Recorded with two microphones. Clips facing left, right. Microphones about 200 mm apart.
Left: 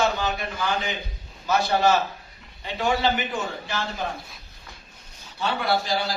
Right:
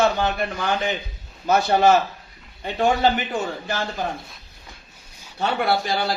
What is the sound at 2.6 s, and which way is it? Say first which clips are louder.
A man's voice: right 4 dB; 50° right (ahead or behind).